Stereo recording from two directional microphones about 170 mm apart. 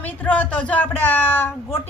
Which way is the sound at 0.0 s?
10° left (ahead or behind).